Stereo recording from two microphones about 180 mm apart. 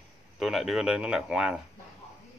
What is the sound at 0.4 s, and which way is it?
Speech, centre (ahead or behind).